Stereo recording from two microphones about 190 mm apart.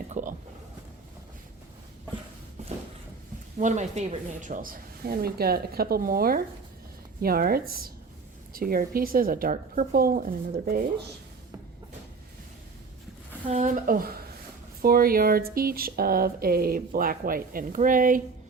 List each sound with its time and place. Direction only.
0.1 s a sound: 45° right (ahead or behind)
3.6 s speech: 40° right (ahead or behind)
13.4 s speech: 35° right (ahead or behind)